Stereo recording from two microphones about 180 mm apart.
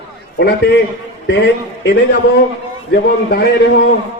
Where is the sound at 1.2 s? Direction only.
70° left (ahead or behind).